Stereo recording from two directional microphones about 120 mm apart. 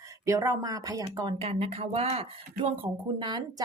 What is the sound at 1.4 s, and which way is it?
Speech, 55° right (ahead or behind).